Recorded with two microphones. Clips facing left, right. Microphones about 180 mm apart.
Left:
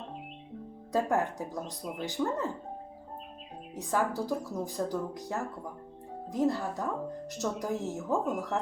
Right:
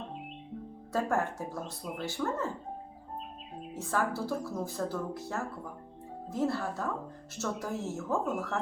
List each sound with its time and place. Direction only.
0.9 s speech: 15° left (ahead or behind)
3.8 s speech: 15° left (ahead or behind)